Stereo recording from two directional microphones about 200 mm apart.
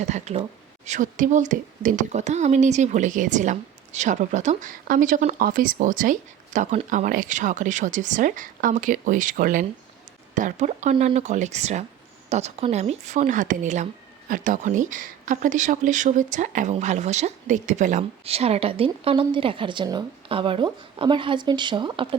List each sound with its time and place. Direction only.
0.0 s speech: 35° right (ahead or behind)